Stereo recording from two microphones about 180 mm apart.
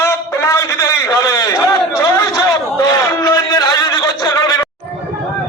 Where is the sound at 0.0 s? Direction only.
15° left (ahead or behind).